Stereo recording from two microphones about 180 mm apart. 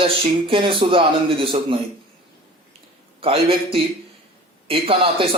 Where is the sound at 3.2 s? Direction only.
30° right (ahead or behind).